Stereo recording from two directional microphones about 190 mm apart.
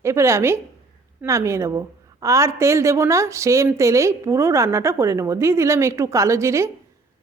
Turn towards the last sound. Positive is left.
turn(degrees=-15)  # may be behind; listen again after turning